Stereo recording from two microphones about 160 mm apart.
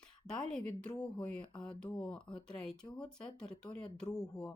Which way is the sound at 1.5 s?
30° left (ahead or behind).